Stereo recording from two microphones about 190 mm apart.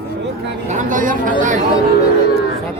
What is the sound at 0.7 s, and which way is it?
Speech, 40° right (ahead or behind).